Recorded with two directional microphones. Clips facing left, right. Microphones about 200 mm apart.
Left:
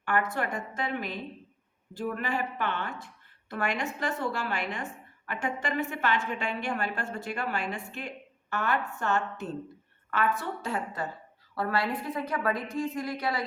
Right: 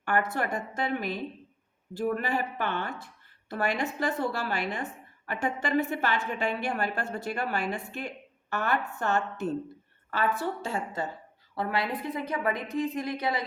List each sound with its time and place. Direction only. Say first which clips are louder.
0.0 s a woman's voice: right 1 dB; 40° right (ahead or behind); by 13.4 s 20° right (ahead or behind)